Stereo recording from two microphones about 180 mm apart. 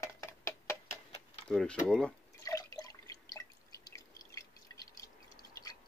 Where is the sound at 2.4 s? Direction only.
20° left (ahead or behind).